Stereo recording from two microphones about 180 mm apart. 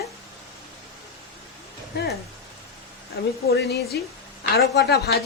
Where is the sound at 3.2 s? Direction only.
70° left (ahead or behind).